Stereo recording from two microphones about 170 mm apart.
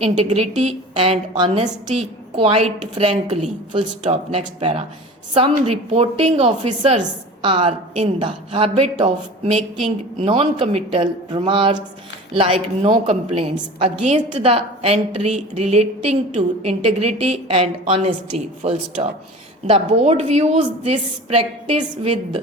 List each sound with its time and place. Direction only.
0.2 s a woman's voice: 40° right (ahead or behind)
7.0 s a woman's voice: 30° right (ahead or behind)